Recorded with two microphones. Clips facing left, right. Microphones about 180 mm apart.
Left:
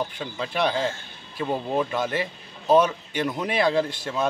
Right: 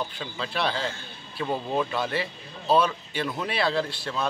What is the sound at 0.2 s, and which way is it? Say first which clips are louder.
Speech: left 4 dB; 15° left (ahead or behind).